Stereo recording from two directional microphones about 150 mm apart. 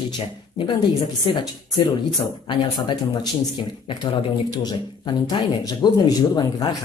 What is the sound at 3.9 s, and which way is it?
Speech, 25° left (ahead or behind).